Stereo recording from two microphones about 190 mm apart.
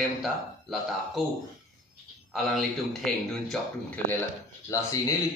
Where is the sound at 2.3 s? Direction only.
Centre (ahead or behind).